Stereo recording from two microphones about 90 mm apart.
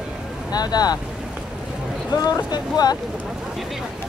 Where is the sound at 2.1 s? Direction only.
45° left (ahead or behind).